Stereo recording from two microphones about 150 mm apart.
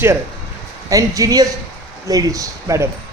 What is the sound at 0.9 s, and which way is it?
A man's voice, 20° right (ahead or behind).